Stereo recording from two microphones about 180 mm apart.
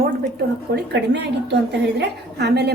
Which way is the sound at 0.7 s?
70° right (ahead or behind).